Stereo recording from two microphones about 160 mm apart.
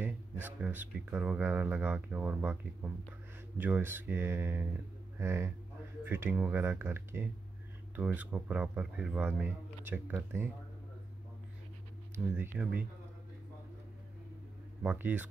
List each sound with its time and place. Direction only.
0.0 s speech: 10° right (ahead or behind)
12.4 s speech: 10° right (ahead or behind)
14.8 s speech: 10° right (ahead or behind)